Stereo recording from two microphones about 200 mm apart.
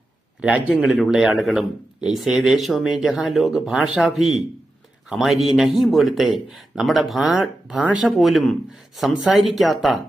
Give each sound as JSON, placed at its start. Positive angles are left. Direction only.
{"t": 0.4, "sound": "a man's voice", "side_deg": -5}